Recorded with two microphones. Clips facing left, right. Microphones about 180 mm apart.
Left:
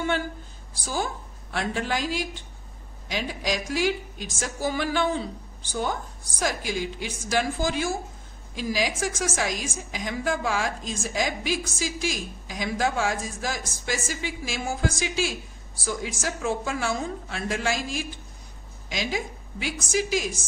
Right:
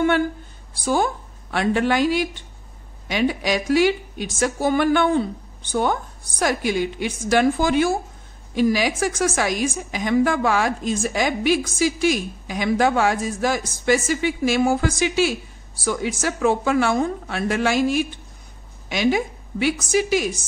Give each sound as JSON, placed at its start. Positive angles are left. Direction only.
{"t": 0.8, "sound": "a woman's voice", "side_deg": -60}